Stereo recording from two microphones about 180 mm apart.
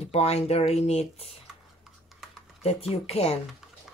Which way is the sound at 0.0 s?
35° left (ahead or behind).